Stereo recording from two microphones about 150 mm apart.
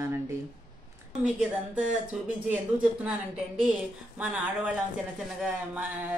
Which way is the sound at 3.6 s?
10° right (ahead or behind).